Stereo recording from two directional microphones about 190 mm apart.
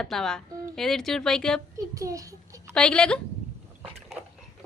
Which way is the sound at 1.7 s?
15° right (ahead or behind).